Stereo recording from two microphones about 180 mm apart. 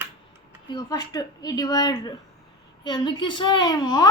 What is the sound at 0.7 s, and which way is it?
A woman's voice, 20° left (ahead or behind).